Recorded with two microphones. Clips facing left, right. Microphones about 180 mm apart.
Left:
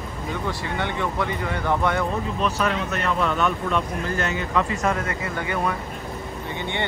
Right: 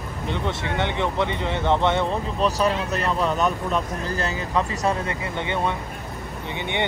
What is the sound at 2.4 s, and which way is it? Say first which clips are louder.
Speech: right 3 dB; 35° right (ahead or behind).